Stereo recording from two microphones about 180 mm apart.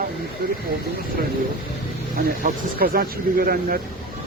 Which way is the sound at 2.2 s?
55° right (ahead or behind).